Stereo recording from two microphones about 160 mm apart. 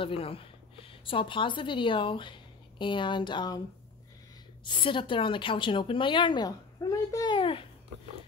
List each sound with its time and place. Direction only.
0.0 s a woman's voice: 35° left (ahead or behind)
4.6 s a woman's voice: 30° left (ahead or behind)